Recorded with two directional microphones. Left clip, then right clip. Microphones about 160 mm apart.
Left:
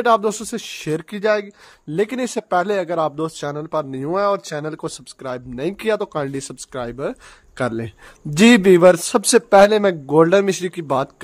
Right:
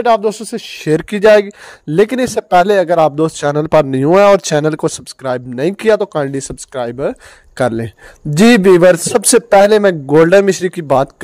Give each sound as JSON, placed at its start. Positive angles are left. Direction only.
{"t": 0.0, "sound": "speech", "side_deg": -10}
{"t": 0.8, "sound": "speech", "side_deg": -35}